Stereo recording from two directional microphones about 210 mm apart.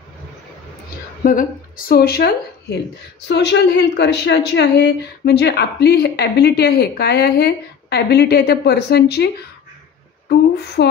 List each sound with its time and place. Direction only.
1.2 s a woman's voice: 40° left (ahead or behind)
10.8 s a woman's voice: 50° left (ahead or behind)